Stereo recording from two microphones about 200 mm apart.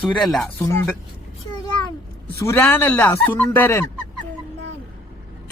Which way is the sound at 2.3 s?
15° left (ahead or behind).